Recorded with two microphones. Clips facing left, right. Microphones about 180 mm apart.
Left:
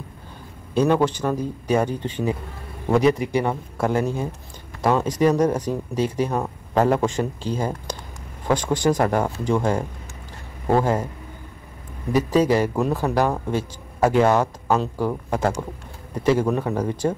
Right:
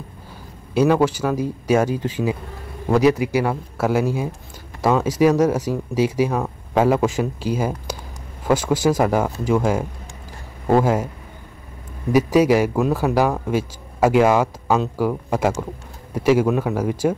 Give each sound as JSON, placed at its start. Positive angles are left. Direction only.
{"t": 0.7, "sound": "a man's voice", "side_deg": -10}
{"t": 12.1, "sound": "speech", "side_deg": -10}